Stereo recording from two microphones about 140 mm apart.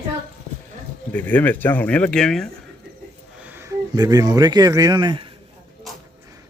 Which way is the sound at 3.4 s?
15° right (ahead or behind).